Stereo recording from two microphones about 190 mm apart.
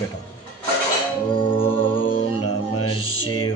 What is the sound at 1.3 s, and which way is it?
Music, 25° left (ahead or behind).